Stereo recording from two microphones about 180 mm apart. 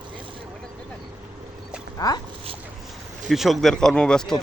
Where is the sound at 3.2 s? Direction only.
Centre (ahead or behind).